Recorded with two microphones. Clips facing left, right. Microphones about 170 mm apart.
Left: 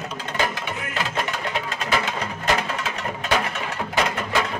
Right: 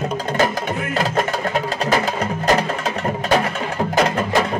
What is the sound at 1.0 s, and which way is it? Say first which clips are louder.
Music: right 6 dB; 40° right (ahead or behind).